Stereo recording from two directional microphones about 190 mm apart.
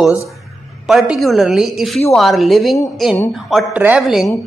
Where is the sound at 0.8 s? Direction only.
Centre (ahead or behind).